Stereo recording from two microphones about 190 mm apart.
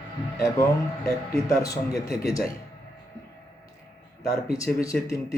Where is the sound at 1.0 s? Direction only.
15° left (ahead or behind).